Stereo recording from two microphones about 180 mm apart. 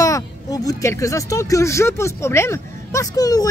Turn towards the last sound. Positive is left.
turn(degrees=20)  # may be behind; listen again after turning